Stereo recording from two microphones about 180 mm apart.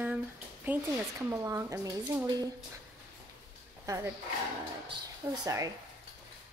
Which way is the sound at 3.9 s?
15° right (ahead or behind).